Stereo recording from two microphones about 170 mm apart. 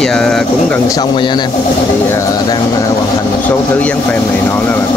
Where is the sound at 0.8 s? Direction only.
20° left (ahead or behind).